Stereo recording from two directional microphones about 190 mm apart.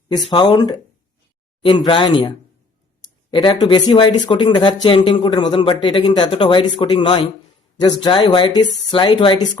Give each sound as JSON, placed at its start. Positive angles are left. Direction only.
{"t": 0.3, "sound": "speech", "side_deg": 20}
{"t": 3.3, "sound": "speech", "side_deg": 25}